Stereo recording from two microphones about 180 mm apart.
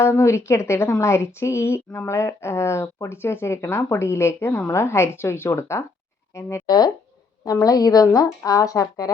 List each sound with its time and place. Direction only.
0.0 s speech: 15° left (ahead or behind)